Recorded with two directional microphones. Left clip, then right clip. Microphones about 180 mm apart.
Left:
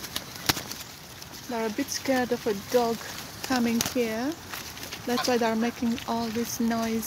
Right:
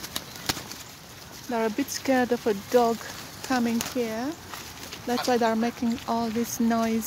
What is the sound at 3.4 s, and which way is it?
Speech, 5° right (ahead or behind).